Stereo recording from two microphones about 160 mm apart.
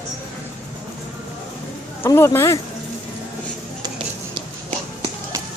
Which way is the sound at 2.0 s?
15° left (ahead or behind).